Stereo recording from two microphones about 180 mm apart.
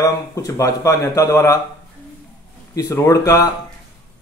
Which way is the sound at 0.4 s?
20° left (ahead or behind).